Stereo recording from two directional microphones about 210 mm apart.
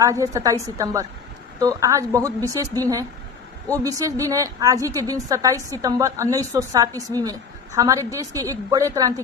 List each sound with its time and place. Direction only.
0.0 s a woman's voice: 15° right (ahead or behind)